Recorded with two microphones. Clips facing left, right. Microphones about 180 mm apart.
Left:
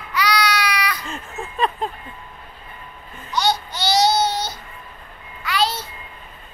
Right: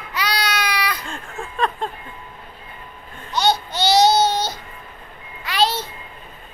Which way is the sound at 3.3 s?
25° right (ahead or behind).